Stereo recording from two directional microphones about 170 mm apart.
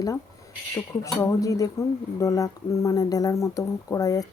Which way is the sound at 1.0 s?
20° left (ahead or behind).